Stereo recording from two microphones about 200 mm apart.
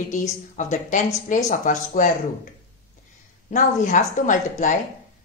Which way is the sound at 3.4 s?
40° left (ahead or behind).